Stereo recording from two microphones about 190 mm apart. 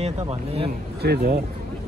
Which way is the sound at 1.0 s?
55° right (ahead or behind).